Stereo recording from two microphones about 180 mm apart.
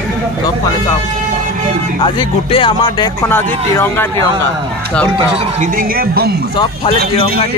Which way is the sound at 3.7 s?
10° left (ahead or behind).